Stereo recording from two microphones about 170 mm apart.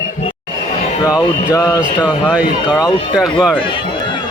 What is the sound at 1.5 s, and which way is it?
Speech, 15° left (ahead or behind).